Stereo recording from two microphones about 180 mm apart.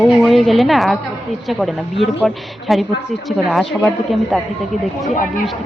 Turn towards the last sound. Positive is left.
turn(degrees=50)  # may be behind; listen again after turning